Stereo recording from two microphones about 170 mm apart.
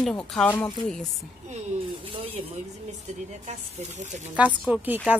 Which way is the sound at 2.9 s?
40° right (ahead or behind).